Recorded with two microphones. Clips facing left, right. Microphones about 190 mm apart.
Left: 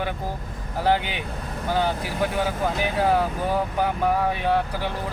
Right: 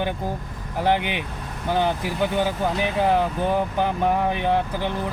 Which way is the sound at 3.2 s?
25° right (ahead or behind).